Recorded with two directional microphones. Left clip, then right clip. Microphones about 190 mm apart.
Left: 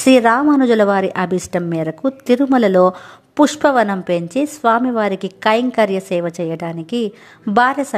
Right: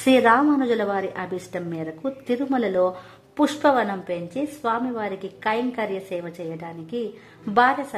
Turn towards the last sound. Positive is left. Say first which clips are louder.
# left 5 dB
turn(degrees=35)  # may be behind; listen again after turning